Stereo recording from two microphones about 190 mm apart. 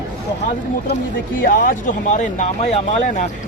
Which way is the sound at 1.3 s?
45° left (ahead or behind).